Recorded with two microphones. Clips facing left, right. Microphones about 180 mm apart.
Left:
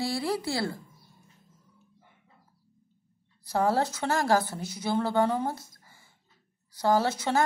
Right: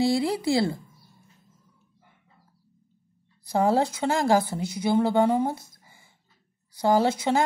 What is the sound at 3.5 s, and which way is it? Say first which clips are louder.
A woman's voice: right 3 dB; 15° right (ahead or behind).